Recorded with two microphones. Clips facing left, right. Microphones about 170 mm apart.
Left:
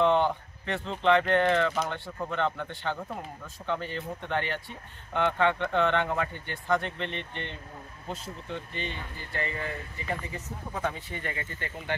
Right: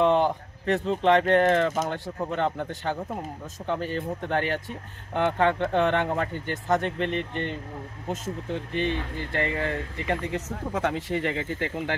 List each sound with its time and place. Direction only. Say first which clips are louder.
0.1 s speech: right 3 dB; 40° right (ahead or behind)
8.7 s speech: right 10 dB; 65° right (ahead or behind); by 11.9 s 90° right